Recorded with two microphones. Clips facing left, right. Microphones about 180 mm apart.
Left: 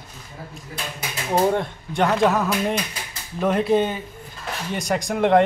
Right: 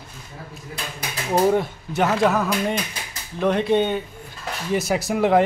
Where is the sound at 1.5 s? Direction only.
5° right (ahead or behind).